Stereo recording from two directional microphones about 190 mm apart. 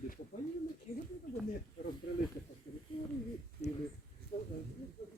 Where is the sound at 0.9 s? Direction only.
35° left (ahead or behind).